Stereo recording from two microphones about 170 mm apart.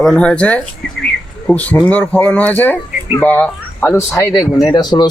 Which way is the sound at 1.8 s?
10° left (ahead or behind).